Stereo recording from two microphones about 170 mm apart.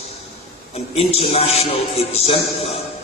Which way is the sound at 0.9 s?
35° left (ahead or behind).